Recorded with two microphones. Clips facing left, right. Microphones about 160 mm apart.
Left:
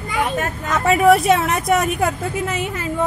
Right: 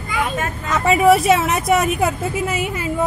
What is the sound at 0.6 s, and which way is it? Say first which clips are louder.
A woman's voice: even; centre (ahead or behind).